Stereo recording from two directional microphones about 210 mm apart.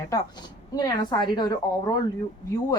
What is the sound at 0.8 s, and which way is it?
A woman's voice, 20° left (ahead or behind).